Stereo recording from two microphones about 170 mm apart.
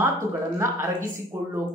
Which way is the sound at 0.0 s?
15° right (ahead or behind).